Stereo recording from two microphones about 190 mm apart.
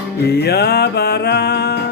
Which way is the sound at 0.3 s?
55° left (ahead or behind).